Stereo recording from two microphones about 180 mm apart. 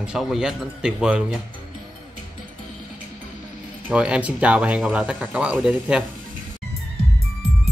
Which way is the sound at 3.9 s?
5° right (ahead or behind).